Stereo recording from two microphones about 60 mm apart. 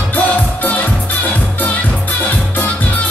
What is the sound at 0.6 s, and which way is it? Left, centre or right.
Music, left.